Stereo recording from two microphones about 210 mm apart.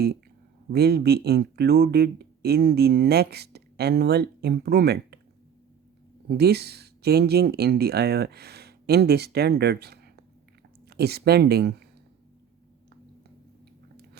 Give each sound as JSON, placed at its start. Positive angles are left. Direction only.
{"t": 0.7, "sound": "speech", "side_deg": -50}
{"t": 6.2, "sound": "speech", "side_deg": -50}